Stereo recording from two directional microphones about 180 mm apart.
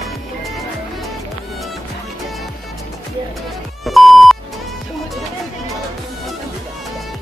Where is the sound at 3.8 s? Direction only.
Centre (ahead or behind).